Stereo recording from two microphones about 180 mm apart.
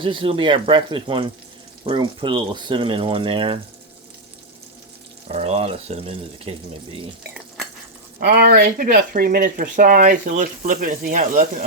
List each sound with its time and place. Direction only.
0.0 s speech: 30° right (ahead or behind)
5.3 s speech: 35° right (ahead or behind)
8.2 s speech: 60° right (ahead or behind)